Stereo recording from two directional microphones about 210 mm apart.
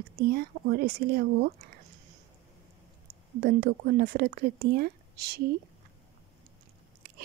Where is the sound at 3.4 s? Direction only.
45° right (ahead or behind).